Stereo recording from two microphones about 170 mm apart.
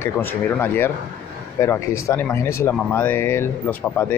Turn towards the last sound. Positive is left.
turn(degrees=10)  # may be behind; listen again after turning